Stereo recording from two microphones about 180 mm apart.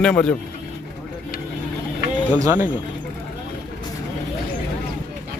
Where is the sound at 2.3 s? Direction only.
15° right (ahead or behind).